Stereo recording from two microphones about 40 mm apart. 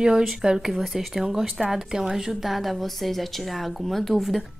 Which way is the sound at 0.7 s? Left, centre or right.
Centre.